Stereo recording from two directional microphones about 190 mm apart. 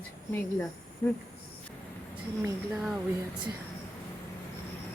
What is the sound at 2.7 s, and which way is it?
Speech, 5° right (ahead or behind).